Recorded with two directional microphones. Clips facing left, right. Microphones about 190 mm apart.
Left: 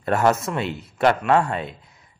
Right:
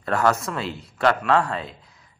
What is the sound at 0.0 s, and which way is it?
A man's voice, 25° left (ahead or behind).